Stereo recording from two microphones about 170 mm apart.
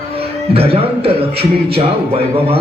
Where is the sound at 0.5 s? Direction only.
35° right (ahead or behind).